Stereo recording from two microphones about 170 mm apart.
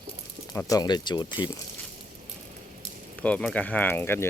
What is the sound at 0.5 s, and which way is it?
Speech, 20° left (ahead or behind).